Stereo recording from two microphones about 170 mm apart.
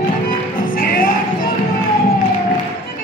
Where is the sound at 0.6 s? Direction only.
55° left (ahead or behind).